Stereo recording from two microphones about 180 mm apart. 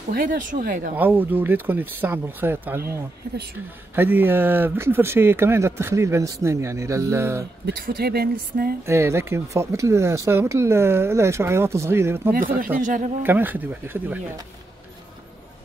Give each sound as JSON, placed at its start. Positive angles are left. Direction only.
{"t": 0.1, "sound": "speech", "side_deg": -50}
{"t": 0.9, "sound": "speech", "side_deg": -10}
{"t": 3.9, "sound": "speech", "side_deg": -10}
{"t": 7.6, "sound": "speech", "side_deg": -60}
{"t": 8.8, "sound": "speech", "side_deg": -15}
{"t": 12.8, "sound": "speech", "side_deg": -45}
{"t": 13.2, "sound": "speech", "side_deg": -10}